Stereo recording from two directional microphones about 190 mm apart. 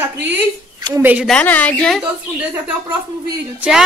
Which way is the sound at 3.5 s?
5° right (ahead or behind).